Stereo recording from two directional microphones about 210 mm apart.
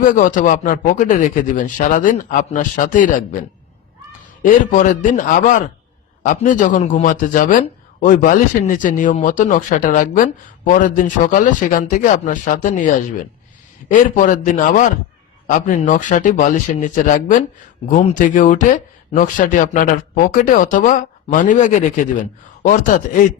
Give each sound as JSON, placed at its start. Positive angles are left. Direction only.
{"t": 0.0, "sound": "speech", "side_deg": 40}
{"t": 4.4, "sound": "speech", "side_deg": 40}